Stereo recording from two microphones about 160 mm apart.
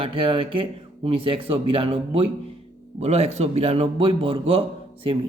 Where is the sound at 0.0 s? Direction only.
35° right (ahead or behind).